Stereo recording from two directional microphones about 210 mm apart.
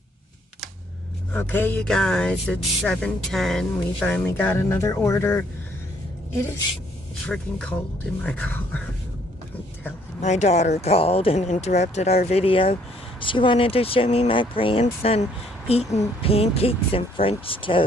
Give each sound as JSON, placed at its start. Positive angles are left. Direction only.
{"t": 1.3, "sound": "speech", "side_deg": 10}
{"t": 7.2, "sound": "speech", "side_deg": 5}
{"t": 10.2, "sound": "speech", "side_deg": 35}